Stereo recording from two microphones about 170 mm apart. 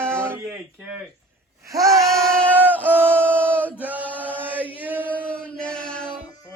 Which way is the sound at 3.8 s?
10° right (ahead or behind).